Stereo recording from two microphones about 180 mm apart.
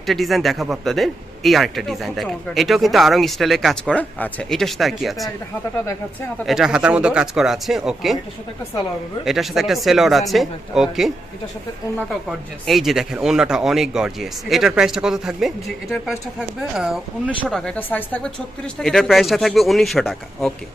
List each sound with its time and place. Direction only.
0.1 s a man's voice: centre (ahead or behind)
5.8 s speech: 15° left (ahead or behind)
6.4 s a man's voice: centre (ahead or behind)
9.2 s a man's voice: centre (ahead or behind)
12.6 s a man's voice: centre (ahead or behind)
17.7 s a man's voice: 10° left (ahead or behind)